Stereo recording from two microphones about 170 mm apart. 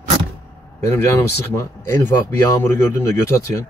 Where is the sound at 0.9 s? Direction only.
15° left (ahead or behind).